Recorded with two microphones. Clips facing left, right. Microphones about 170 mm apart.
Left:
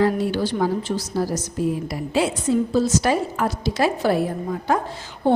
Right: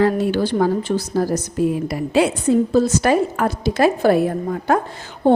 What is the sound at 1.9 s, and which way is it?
A woman's voice, 65° right (ahead or behind).